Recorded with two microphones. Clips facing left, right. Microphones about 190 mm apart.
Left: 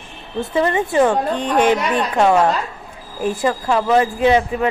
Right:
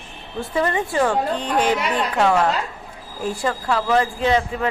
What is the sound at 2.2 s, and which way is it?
A woman's voice, 25° left (ahead or behind).